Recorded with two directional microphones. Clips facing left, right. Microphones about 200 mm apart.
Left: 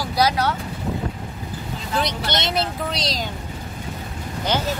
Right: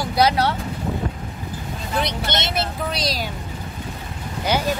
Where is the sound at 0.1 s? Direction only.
25° right (ahead or behind).